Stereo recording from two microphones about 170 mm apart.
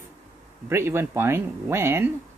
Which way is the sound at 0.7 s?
15° right (ahead or behind).